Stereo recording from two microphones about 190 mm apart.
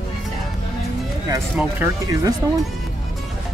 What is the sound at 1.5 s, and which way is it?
Speech, 15° right (ahead or behind).